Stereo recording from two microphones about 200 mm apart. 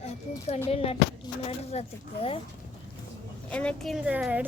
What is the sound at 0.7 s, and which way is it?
Speech, 30° left (ahead or behind).